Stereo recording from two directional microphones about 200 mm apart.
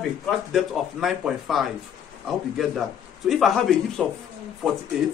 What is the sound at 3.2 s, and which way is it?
Speech, centre (ahead or behind).